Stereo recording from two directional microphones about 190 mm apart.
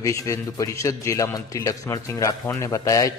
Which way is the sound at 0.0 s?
15° left (ahead or behind).